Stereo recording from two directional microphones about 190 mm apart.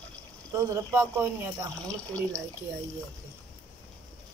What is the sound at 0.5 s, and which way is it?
Speech, 15° right (ahead or behind).